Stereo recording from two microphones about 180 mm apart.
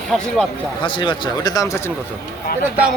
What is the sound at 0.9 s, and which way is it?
Speech, 25° left (ahead or behind).